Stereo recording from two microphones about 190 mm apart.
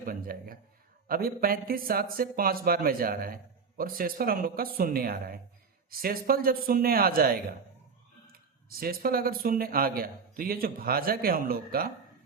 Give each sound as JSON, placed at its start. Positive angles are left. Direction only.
{"t": 0.0, "sound": "speech", "side_deg": -50}